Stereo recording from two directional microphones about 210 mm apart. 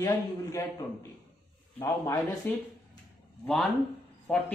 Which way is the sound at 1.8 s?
20° left (ahead or behind).